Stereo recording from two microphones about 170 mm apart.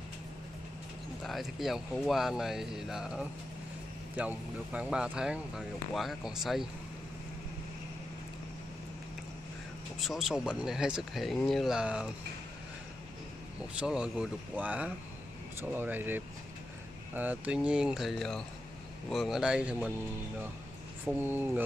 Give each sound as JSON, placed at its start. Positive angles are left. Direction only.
{"t": 1.2, "sound": "speech", "side_deg": 0}
{"t": 9.9, "sound": "speech", "side_deg": 0}
{"t": 13.7, "sound": "speech", "side_deg": -5}
{"t": 21.0, "sound": "speech", "side_deg": -10}